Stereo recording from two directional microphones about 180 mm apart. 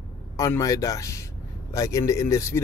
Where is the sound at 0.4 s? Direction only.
20° left (ahead or behind).